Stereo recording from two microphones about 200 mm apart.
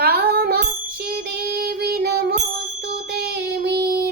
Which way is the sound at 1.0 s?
55° right (ahead or behind).